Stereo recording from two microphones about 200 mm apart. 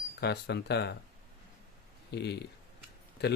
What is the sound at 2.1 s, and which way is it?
Speech, 55° left (ahead or behind).